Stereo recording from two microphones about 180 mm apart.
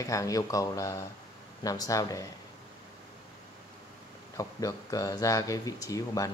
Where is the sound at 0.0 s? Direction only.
20° left (ahead or behind).